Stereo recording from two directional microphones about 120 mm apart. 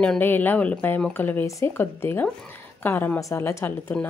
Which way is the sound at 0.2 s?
15° left (ahead or behind).